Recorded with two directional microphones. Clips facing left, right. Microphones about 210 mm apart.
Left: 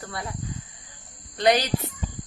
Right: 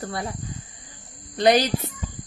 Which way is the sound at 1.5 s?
35° right (ahead or behind).